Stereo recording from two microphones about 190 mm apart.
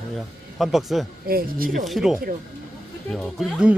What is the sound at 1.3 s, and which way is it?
Speech, 50° right (ahead or behind).